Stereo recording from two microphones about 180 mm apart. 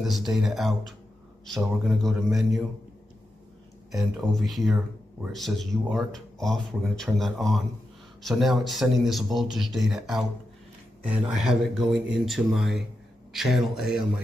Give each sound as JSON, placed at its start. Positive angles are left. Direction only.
{"t": 0.0, "sound": "speech", "side_deg": 0}
{"t": 3.9, "sound": "speech", "side_deg": 0}